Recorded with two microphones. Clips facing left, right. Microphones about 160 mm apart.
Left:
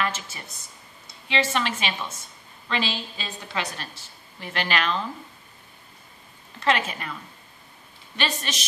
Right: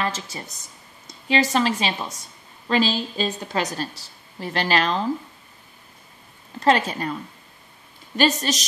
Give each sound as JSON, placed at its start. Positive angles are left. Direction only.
{"t": 0.0, "sound": "a woman's voice", "side_deg": -35}
{"t": 6.6, "sound": "a woman's voice", "side_deg": -35}
{"t": 8.2, "sound": "a woman's voice", "side_deg": -40}